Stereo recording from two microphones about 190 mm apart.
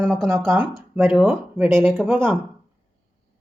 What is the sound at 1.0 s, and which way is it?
Speech, 10° right (ahead or behind).